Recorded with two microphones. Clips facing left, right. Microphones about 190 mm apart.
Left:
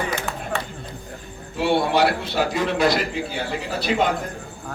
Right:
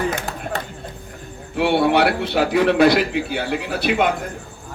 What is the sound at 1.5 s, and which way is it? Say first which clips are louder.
A man's voice: right 3 dB; 65° right (ahead or behind).